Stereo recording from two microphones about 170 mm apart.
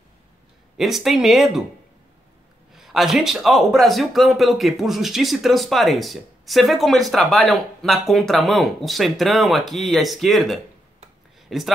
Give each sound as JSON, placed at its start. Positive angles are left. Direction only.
{"t": 0.7, "sound": "speech", "side_deg": 0}
{"t": 2.7, "sound": "speech", "side_deg": 0}